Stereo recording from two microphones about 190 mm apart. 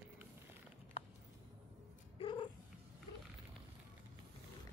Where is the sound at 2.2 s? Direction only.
25° left (ahead or behind).